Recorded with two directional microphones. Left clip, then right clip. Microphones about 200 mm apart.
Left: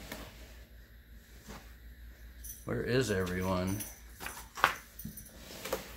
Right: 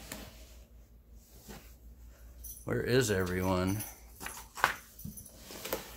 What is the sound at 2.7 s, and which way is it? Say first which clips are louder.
Speech: right 2 dB; 50° right (ahead or behind).